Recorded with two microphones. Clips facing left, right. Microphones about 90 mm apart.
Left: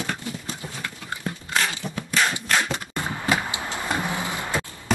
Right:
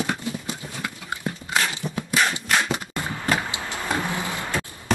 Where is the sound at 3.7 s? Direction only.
20° left (ahead or behind).